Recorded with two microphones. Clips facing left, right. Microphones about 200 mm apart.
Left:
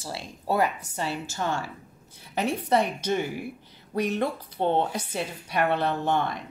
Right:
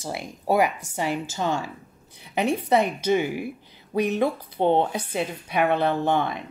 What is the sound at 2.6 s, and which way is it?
A woman's voice, 10° right (ahead or behind).